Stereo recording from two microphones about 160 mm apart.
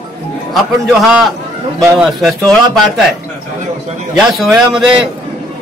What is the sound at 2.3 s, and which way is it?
Speech, 5° left (ahead or behind).